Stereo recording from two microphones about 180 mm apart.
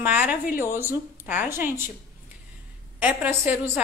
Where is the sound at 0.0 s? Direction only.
10° right (ahead or behind).